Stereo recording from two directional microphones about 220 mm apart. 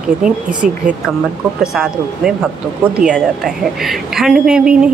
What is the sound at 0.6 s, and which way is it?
Speech, 35° right (ahead or behind).